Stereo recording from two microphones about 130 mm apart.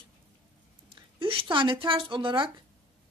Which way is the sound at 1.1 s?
40° right (ahead or behind).